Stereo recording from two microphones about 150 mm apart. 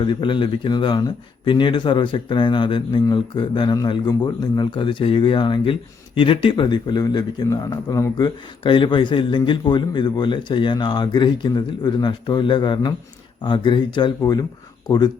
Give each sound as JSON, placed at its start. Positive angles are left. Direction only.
{"t": 0.0, "sound": "a man's voice", "side_deg": 30}
{"t": 8.6, "sound": "speech", "side_deg": 35}